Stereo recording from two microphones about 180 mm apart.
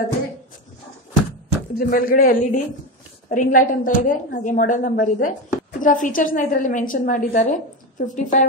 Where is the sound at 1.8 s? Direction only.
55° left (ahead or behind).